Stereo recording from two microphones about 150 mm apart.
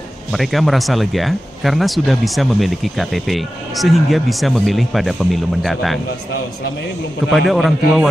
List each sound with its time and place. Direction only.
0.3 s speech: centre (ahead or behind)
7.3 s speech: centre (ahead or behind)